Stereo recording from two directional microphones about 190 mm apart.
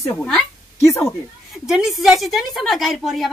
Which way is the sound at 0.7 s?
15° left (ahead or behind).